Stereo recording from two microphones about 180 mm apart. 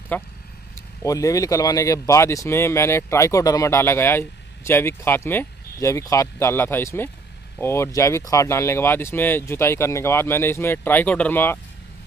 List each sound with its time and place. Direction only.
0.1 s speech: 10° left (ahead or behind)